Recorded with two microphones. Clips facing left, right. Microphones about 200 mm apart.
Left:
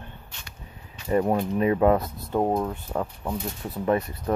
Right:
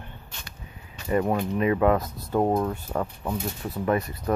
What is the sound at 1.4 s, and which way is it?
Speech, 35° left (ahead or behind).